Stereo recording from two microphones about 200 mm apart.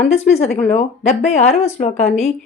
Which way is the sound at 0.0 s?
30° left (ahead or behind).